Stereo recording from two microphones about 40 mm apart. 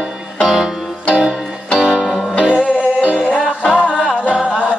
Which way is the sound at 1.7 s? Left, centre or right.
Centre.